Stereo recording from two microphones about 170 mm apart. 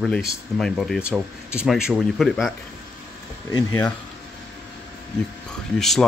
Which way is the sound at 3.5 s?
15° left (ahead or behind).